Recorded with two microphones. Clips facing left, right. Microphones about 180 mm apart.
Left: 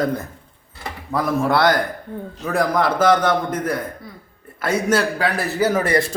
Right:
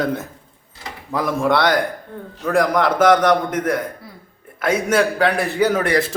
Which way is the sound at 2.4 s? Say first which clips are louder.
Right 2 dB; 5° left (ahead or behind).